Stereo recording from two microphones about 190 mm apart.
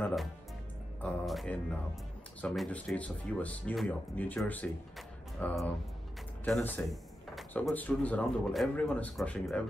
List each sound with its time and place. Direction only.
0.0 s speech: centre (ahead or behind)